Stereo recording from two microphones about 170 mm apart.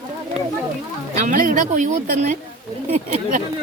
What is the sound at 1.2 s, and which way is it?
Speech, 50° right (ahead or behind).